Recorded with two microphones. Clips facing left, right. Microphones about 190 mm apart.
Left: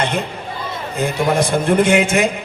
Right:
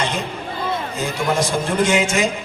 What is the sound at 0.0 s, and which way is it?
A man's voice, 60° left (ahead or behind).